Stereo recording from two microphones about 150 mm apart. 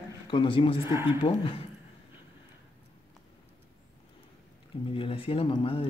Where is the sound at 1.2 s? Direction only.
35° left (ahead or behind).